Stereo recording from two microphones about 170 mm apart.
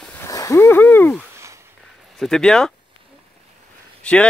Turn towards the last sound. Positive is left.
turn(degrees=5)  # may be behind; listen again after turning